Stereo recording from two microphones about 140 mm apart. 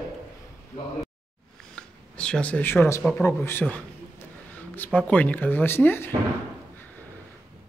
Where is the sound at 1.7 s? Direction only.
5° left (ahead or behind).